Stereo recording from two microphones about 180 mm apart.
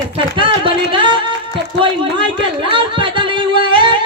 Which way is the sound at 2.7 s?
25° right (ahead or behind).